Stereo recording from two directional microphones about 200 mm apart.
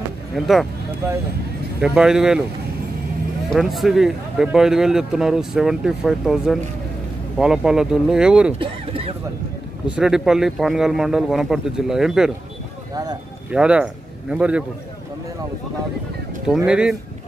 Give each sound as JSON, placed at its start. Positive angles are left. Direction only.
{"t": 0.4, "sound": "a man's voice", "side_deg": 0}
{"t": 1.8, "sound": "a man's voice", "side_deg": -5}
{"t": 3.5, "sound": "a man's voice", "side_deg": 0}
{"t": 8.5, "sound": "speech", "side_deg": -30}
{"t": 9.9, "sound": "a man's voice", "side_deg": 0}
{"t": 12.9, "sound": "speech", "side_deg": -20}
{"t": 13.5, "sound": "a man's voice", "side_deg": -5}
{"t": 16.4, "sound": "a man's voice", "side_deg": -5}